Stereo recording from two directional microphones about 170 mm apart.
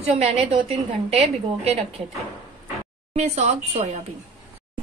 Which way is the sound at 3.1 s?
40° right (ahead or behind).